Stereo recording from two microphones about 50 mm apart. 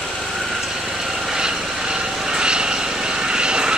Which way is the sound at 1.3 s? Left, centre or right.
Centre.